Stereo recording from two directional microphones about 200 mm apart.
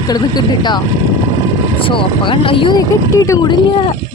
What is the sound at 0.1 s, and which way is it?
Speech, 20° left (ahead or behind).